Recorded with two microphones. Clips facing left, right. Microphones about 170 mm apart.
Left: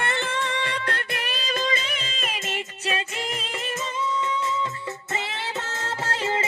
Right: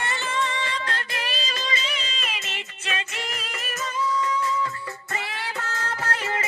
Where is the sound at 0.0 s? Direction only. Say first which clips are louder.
Left 1 dB; 55° left (ahead or behind); by 3.8 s 25° left (ahead or behind).